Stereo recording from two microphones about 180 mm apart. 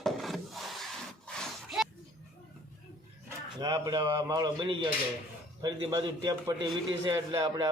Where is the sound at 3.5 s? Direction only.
20° right (ahead or behind).